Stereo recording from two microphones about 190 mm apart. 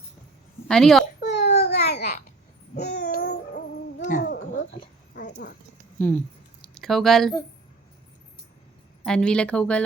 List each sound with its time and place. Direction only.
0.7 s speech: 5° left (ahead or behind)
1.2 s babbling: 65° left (ahead or behind)
3.0 s music: 50° left (ahead or behind)
5.1 s a sound: 45° left (ahead or behind)
6.0 s a sound: 10° left (ahead or behind)
9.0 s speech: 5° left (ahead or behind)